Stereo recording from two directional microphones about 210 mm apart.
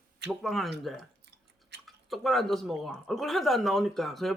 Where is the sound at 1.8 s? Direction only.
Centre (ahead or behind).